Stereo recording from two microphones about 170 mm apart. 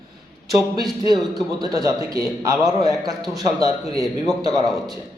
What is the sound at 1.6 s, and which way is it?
A man's voice, 20° right (ahead or behind).